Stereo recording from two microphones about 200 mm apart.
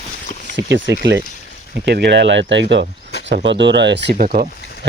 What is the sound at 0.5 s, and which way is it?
Speech, 65° right (ahead or behind).